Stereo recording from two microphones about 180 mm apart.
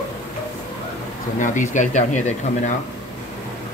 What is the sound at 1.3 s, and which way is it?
Speech, 45° left (ahead or behind).